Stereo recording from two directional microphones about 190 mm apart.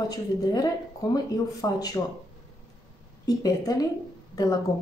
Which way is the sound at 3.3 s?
20° left (ahead or behind).